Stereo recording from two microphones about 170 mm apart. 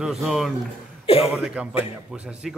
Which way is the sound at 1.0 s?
35° left (ahead or behind).